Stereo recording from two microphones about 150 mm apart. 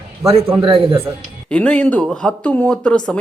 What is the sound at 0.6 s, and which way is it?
Speech, 35° right (ahead or behind).